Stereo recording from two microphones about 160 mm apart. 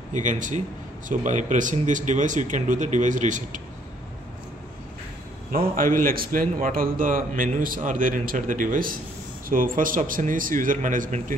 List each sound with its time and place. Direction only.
0.1 s speech: 50° right (ahead or behind)
5.5 s a man's voice: 60° right (ahead or behind)